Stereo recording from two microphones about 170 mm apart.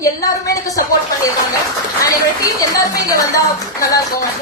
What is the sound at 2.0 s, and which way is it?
Speech, 20° left (ahead or behind).